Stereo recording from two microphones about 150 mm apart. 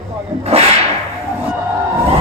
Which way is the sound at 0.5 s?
45° right (ahead or behind).